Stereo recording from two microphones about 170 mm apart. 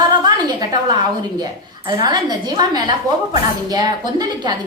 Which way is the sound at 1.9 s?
25° right (ahead or behind).